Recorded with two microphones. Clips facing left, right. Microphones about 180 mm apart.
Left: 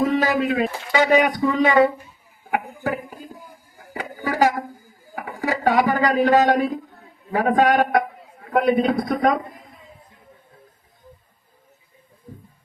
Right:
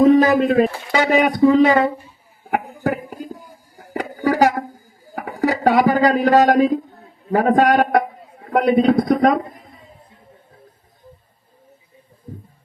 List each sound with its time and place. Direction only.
0.2 s speech: 50° right (ahead or behind)
2.5 s a sound: 45° right (ahead or behind)
5.1 s a man's voice: 40° right (ahead or behind)